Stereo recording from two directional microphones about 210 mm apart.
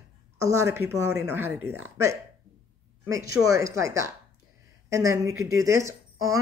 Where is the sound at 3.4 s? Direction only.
15° right (ahead or behind).